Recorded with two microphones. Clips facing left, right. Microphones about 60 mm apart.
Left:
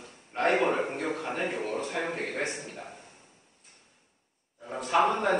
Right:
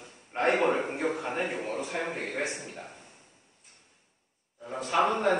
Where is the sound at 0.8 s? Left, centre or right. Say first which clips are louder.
Right 1 dB; centre.